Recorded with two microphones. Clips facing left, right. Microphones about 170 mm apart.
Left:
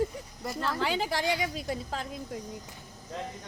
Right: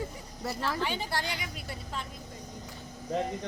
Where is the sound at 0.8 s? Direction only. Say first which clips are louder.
Left 3 dB; 90° left.